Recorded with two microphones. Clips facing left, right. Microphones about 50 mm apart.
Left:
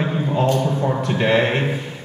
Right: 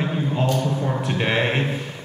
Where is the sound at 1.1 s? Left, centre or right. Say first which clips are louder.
Left 5 dB; centre.